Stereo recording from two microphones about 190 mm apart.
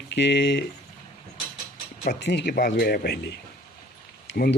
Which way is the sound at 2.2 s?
65° left (ahead or behind).